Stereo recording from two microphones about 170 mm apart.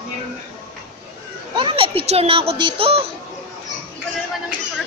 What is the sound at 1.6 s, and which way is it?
A child's voice, 30° right (ahead or behind).